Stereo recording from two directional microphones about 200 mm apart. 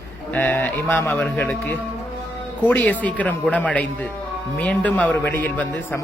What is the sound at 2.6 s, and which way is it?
A man's voice, 10° left (ahead or behind).